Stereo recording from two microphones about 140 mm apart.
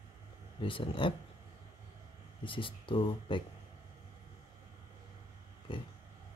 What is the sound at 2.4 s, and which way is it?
Speech, 35° left (ahead or behind).